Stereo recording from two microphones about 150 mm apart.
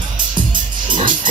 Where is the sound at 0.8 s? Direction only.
30° right (ahead or behind).